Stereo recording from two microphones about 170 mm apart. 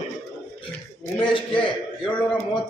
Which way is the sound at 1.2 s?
30° left (ahead or behind).